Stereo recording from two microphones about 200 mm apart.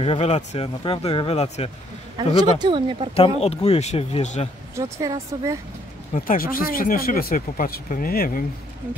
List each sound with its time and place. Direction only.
0.0 s speech: 30° left (ahead or behind)
2.6 s speech: 25° right (ahead or behind)
3.3 s speech: 30° left (ahead or behind)
4.7 s speech: 15° right (ahead or behind)
6.1 s speech: 45° left (ahead or behind)